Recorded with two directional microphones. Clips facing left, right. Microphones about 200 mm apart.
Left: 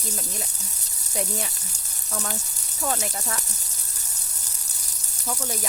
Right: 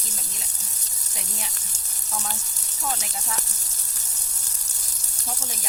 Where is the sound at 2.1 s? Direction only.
55° left (ahead or behind).